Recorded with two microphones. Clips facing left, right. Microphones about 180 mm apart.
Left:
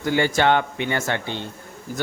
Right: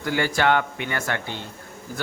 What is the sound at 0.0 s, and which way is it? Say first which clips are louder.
A man's voice: left 3 dB; 25° left (ahead or behind).